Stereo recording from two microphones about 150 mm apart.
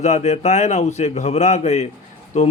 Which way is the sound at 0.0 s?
50° left (ahead or behind).